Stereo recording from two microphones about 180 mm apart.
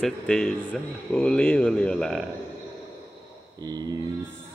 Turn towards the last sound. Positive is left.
turn(degrees=-20)  # may be behind; listen again after turning